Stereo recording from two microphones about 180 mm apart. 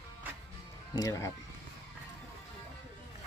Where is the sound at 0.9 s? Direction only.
20° left (ahead or behind).